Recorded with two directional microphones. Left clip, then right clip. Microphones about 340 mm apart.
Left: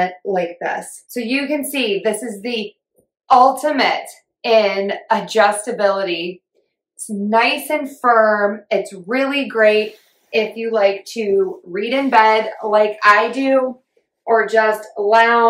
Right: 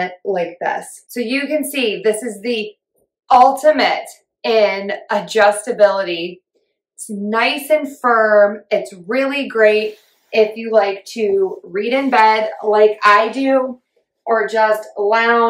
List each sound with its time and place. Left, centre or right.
0.0 s speech: centre
1.0 s a woman's voice: centre
7.2 s a woman's voice: centre